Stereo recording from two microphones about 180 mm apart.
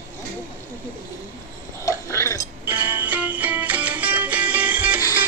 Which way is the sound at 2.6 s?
10° right (ahead or behind).